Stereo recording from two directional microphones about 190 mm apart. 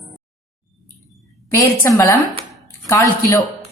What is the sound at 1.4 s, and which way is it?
A woman's voice, 15° left (ahead or behind).